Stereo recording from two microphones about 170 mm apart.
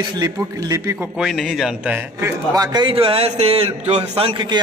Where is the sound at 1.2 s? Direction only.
Centre (ahead or behind).